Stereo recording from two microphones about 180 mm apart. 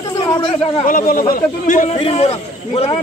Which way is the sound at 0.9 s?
50° left (ahead or behind).